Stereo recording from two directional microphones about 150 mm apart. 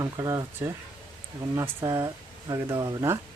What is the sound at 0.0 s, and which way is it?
Speech, 20° right (ahead or behind).